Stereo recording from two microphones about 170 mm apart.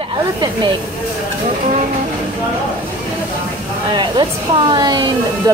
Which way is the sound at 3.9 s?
25° right (ahead or behind).